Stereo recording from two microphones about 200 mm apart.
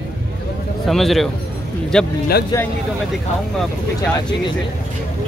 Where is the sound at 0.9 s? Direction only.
Centre (ahead or behind).